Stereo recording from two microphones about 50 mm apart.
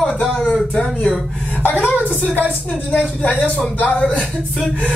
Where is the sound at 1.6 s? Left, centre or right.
Left.